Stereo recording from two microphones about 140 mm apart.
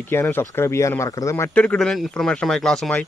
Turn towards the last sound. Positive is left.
turn(degrees=10)  # may be behind; listen again after turning